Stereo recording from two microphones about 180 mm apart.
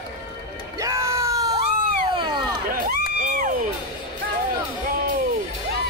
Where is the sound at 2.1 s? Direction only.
25° right (ahead or behind).